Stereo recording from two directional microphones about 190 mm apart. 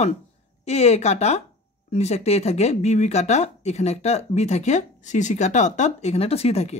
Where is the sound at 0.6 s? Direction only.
35° left (ahead or behind).